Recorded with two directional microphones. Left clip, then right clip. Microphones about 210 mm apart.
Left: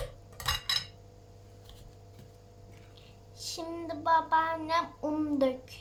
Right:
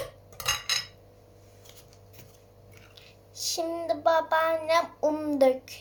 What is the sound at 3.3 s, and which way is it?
Child singing, 20° right (ahead or behind).